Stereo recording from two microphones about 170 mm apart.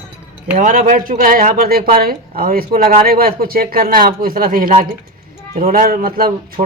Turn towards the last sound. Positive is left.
turn(degrees=-60)  # may be behind; listen again after turning